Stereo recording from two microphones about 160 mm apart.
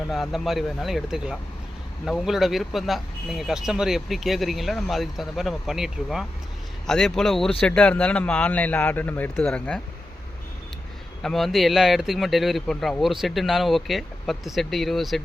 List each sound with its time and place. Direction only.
0.1 s a man's voice: centre (ahead or behind)
11.2 s speech: centre (ahead or behind)